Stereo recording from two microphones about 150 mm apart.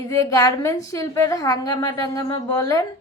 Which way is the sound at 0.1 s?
25° left (ahead or behind).